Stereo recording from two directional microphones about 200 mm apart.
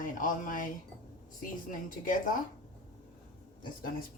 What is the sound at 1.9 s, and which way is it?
Speech, 40° left (ahead or behind).